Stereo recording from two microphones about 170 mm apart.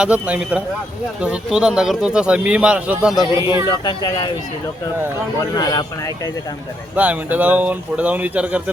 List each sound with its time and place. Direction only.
0.0 s speech: 5° right (ahead or behind)
3.3 s speech: 15° right (ahead or behind)
3.7 s speech: 25° left (ahead or behind)
5.5 s speech: 25° left (ahead or behind)
6.9 s speech: 10° right (ahead or behind)